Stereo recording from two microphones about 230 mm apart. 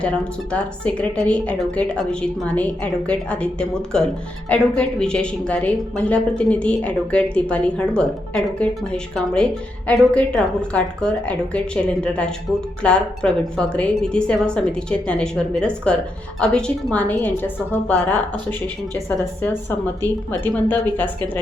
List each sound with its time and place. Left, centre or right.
0.5 s a woman's voice: centre
20.4 s a woman's voice: centre